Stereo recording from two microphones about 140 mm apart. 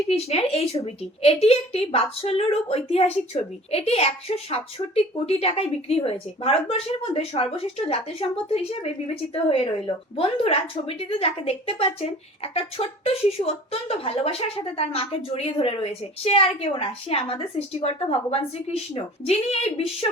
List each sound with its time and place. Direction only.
0.1 s a woman's voice: 45° left (ahead or behind)